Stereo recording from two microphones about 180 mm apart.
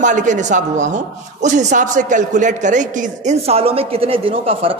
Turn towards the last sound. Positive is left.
turn(degrees=-30)  # may be behind; listen again after turning